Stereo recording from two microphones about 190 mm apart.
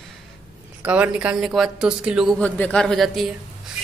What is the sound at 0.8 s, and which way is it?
A woman's voice, 5° right (ahead or behind).